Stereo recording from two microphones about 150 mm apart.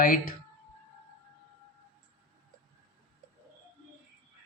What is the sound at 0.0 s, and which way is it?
Speech, 70° left (ahead or behind).